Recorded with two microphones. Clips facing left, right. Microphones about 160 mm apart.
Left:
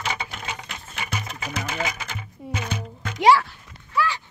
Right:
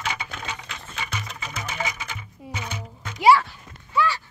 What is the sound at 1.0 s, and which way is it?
Music, 50° left (ahead or behind).